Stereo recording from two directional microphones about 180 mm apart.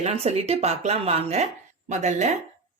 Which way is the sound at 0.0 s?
35° right (ahead or behind).